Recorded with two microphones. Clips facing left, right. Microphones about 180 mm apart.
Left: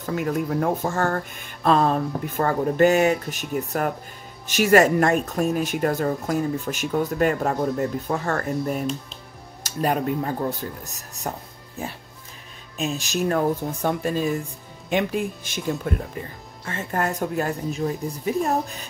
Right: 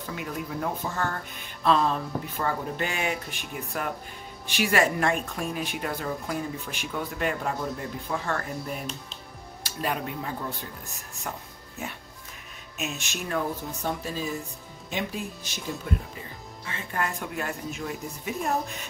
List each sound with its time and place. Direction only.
0.0 s speech: 45° left (ahead or behind)
16.6 s speech: 45° left (ahead or behind)